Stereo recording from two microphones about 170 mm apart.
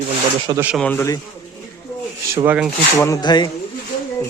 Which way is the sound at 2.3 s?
15° right (ahead or behind).